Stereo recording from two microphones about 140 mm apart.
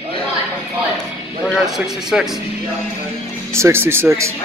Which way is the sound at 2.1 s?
5° right (ahead or behind).